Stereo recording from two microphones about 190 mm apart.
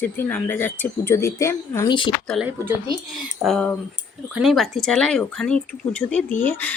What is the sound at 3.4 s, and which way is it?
Speech, 5° left (ahead or behind).